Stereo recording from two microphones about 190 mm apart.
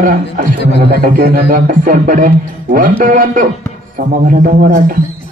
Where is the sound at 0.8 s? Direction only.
55° right (ahead or behind).